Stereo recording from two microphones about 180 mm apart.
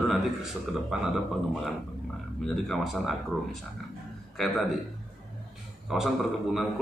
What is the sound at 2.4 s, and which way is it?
A man's voice, centre (ahead or behind).